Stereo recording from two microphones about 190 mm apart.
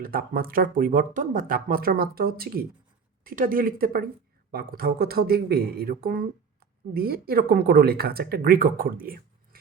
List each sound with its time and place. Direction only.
0.0 s speech: 50° right (ahead or behind)